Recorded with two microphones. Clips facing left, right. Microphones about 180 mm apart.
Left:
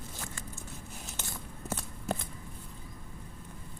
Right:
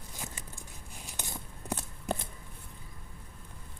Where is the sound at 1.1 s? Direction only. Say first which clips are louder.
Right 3 dB; 15° right (ahead or behind).